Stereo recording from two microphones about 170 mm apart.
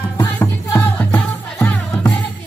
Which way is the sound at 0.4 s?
10° left (ahead or behind).